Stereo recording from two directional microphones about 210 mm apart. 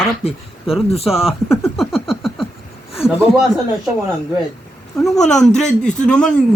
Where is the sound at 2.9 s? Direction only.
Centre (ahead or behind).